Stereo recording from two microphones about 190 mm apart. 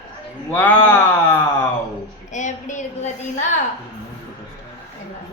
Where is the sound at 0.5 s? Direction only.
10° left (ahead or behind).